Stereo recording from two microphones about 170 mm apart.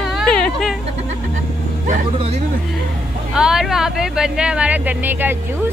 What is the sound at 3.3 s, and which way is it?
Speech, 5° right (ahead or behind).